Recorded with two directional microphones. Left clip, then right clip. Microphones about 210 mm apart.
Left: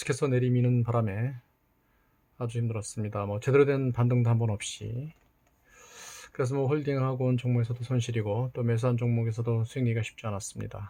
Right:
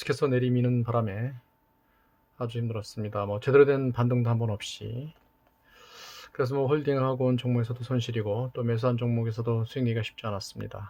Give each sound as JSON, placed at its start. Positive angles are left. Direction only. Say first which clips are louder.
{"t": 0.0, "sound": "speech", "louder": "right 2 dB", "side_deg": 0}
{"t": 2.4, "sound": "speech", "louder": "right 2 dB", "side_deg": 0}